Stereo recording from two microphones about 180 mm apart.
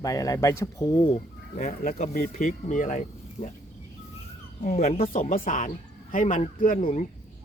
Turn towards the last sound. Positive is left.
turn(degrees=50)  # may be behind; listen again after turning